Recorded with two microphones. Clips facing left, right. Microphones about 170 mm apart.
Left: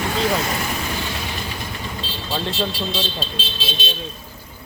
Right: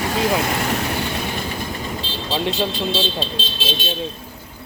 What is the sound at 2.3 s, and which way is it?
Speech, 15° right (ahead or behind).